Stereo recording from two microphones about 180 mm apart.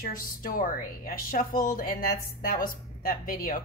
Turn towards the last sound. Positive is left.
turn(degrees=50)  # may be behind; listen again after turning